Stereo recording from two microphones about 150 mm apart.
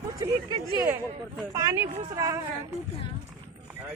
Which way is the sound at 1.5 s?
20° right (ahead or behind).